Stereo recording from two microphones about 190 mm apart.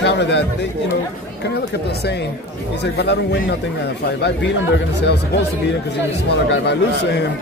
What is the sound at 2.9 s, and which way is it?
Speech, 60° left (ahead or behind).